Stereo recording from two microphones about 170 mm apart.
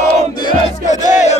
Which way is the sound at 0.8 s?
45° left (ahead or behind).